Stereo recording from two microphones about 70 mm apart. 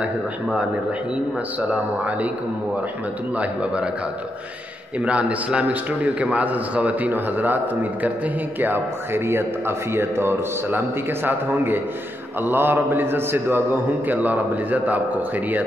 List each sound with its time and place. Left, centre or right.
1.7 s a man's voice: right
3.3 s a man's voice: centre
5.0 s a man's voice: centre